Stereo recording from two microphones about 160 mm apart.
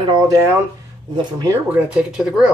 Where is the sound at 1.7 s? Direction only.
5° right (ahead or behind).